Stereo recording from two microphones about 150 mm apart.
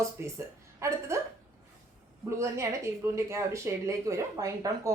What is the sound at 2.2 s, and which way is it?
A woman's voice, 20° right (ahead or behind).